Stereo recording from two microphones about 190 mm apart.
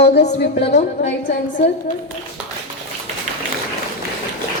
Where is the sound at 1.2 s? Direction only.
40° left (ahead or behind).